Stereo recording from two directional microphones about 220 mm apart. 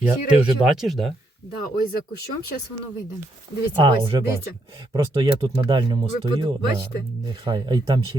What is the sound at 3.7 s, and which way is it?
Speech, 20° right (ahead or behind).